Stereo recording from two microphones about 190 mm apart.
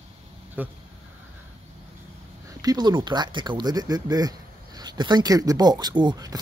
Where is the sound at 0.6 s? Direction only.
10° right (ahead or behind).